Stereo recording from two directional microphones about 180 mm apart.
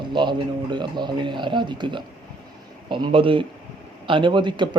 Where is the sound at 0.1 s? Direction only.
25° right (ahead or behind).